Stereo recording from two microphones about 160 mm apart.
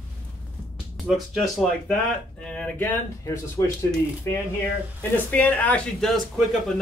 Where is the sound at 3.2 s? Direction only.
20° left (ahead or behind).